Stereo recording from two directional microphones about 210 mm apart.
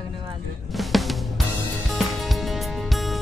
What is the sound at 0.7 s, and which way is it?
Music, centre (ahead or behind).